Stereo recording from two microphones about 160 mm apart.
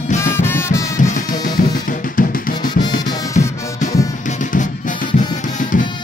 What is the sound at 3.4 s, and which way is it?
Music, 50° left (ahead or behind).